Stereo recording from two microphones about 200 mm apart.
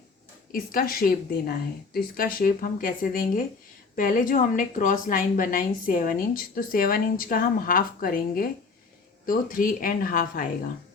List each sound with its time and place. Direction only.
0.5 s a woman's voice: 45° left (ahead or behind)